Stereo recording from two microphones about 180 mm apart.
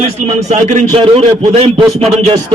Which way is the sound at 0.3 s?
35° right (ahead or behind).